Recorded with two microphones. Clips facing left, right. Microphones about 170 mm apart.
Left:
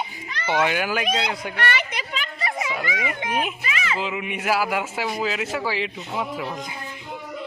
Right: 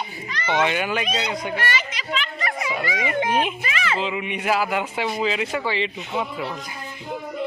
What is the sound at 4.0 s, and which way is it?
A man's voice, 5° left (ahead or behind).